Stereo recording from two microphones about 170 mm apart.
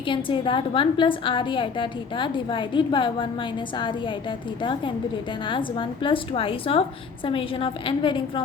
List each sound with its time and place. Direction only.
0.1 s a woman's voice: 30° left (ahead or behind)
5.5 s a woman's voice: 30° left (ahead or behind)